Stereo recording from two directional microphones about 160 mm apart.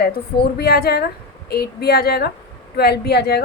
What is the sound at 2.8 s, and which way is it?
Speech, 90° left.